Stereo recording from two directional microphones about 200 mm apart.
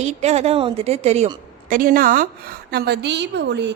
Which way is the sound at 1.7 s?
45° right (ahead or behind).